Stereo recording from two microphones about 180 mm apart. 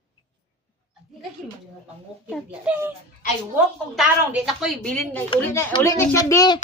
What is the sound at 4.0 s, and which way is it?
A woman's voice, centre (ahead or behind).